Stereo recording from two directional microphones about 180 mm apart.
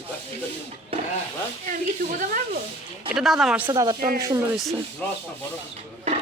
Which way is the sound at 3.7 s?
20° right (ahead or behind).